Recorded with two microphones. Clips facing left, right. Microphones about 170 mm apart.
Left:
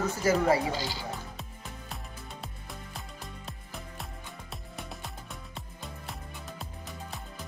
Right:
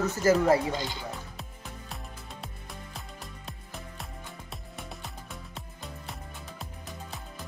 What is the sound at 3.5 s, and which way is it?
Music, centre (ahead or behind).